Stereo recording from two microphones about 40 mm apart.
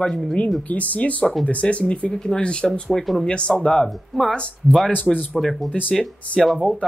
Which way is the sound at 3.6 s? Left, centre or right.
Centre.